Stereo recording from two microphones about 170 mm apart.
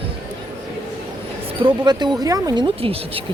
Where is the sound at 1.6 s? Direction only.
25° right (ahead or behind).